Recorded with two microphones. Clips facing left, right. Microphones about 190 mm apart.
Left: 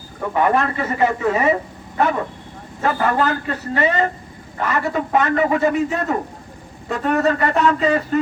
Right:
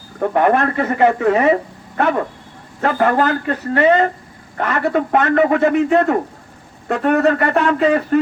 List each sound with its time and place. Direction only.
0.2 s a man's voice: 55° right (ahead or behind)
2.8 s a man's voice: 55° right (ahead or behind)